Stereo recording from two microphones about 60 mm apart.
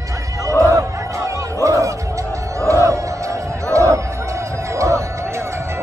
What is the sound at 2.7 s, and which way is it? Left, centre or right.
Music, right.